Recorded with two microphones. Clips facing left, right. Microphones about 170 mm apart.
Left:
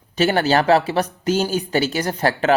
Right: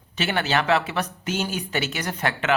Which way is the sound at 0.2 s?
40° left (ahead or behind).